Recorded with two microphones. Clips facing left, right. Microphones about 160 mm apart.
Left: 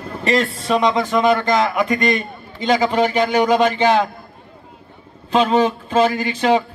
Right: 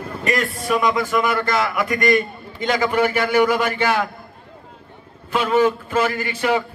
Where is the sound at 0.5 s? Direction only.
20° left (ahead or behind).